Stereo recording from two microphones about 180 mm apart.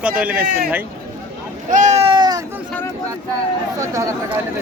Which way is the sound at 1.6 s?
45° right (ahead or behind).